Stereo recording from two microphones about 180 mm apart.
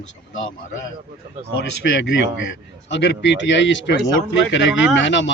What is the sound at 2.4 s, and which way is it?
Speech, 80° left.